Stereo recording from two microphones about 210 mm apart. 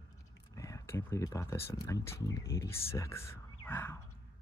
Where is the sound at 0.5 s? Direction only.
15° left (ahead or behind).